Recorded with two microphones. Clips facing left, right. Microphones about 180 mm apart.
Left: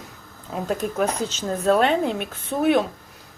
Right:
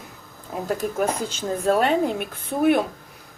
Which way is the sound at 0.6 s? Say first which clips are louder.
Even; 5° right (ahead or behind).